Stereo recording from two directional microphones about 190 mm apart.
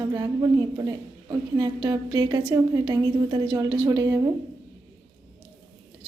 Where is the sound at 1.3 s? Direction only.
20° right (ahead or behind).